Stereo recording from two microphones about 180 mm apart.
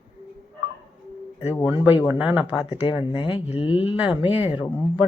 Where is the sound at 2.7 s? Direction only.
30° left (ahead or behind).